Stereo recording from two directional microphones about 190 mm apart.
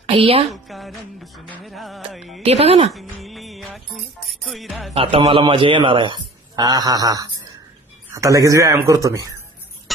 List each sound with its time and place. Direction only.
0.2 s speech: 30° right (ahead or behind)
0.5 s music: centre (ahead or behind)
2.4 s speech: 30° right (ahead or behind)
2.9 s music: centre (ahead or behind)
4.9 s a man's voice: 30° right (ahead or behind)